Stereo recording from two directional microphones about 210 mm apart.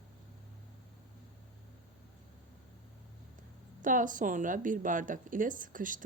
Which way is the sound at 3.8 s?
40° right (ahead or behind).